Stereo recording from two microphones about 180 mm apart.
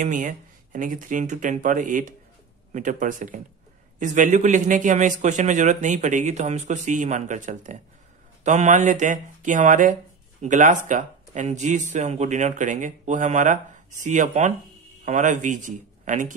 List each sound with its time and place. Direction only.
0.0 s a man's voice: 45° right (ahead or behind)